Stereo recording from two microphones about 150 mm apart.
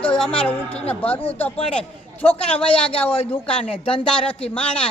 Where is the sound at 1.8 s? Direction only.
40° left (ahead or behind).